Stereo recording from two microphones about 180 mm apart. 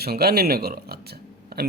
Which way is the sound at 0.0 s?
60° right (ahead or behind).